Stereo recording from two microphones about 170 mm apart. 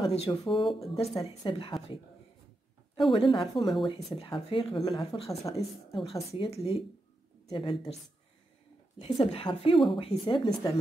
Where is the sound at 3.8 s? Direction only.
30° left (ahead or behind).